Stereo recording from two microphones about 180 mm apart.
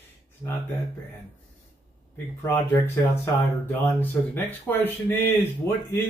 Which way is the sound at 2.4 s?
15° left (ahead or behind).